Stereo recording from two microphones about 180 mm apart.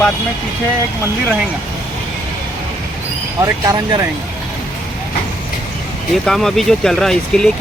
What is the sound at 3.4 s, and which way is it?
Speech, 20° right (ahead or behind).